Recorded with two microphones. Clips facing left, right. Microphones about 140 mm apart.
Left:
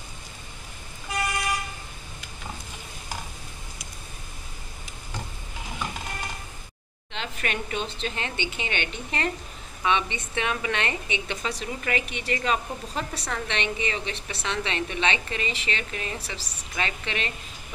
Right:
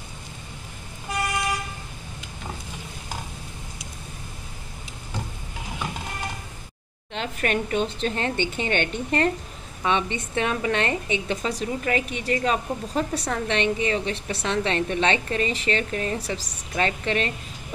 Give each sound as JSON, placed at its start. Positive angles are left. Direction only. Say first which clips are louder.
{"t": 7.2, "sound": "a woman's voice", "louder": "right 6 dB", "side_deg": -45}